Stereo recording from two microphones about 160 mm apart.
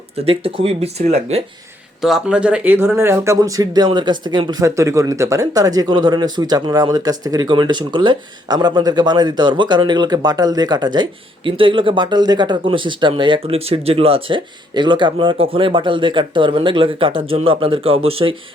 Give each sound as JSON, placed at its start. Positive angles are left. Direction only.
{"t": 0.3, "sound": "speech", "side_deg": -35}
{"t": 2.0, "sound": "speech", "side_deg": 0}